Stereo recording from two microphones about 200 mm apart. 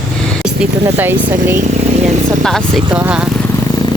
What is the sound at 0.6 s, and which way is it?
Speech, 10° right (ahead or behind).